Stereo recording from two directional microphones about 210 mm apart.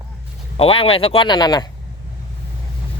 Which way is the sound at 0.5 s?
25° left (ahead or behind).